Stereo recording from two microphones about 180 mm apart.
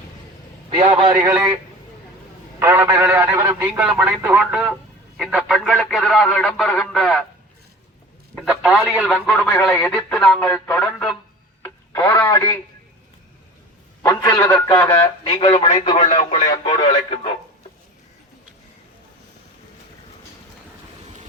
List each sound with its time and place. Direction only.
0.8 s a man's voice: 30° right (ahead or behind)
2.6 s speech: 15° right (ahead or behind); by 7.3 s 5° left (ahead or behind)
8.4 s speech: centre (ahead or behind)
11.6 s radio: 15° left (ahead or behind)
14.2 s speech: 20° left (ahead or behind)
14.8 s speech: 10° left (ahead or behind)
15.3 s a man's voice: 35° left (ahead or behind)